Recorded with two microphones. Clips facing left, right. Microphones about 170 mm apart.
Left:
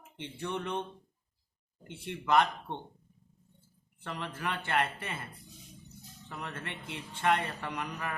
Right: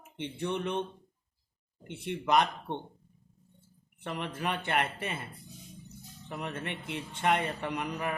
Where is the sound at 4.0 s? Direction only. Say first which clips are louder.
Right 3 dB; 20° right (ahead or behind).